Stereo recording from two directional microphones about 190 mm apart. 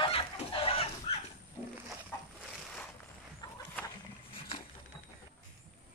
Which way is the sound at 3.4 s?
20° left (ahead or behind).